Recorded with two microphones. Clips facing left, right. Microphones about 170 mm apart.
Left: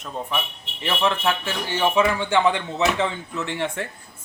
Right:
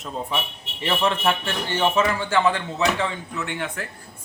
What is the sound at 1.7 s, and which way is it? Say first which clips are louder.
Speech: left 1 dB; 10° left (ahead or behind).